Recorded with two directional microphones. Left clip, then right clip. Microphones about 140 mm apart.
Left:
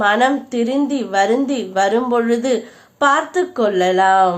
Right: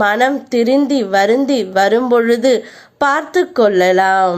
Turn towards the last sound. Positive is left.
turn(degrees=-35)  # may be behind; listen again after turning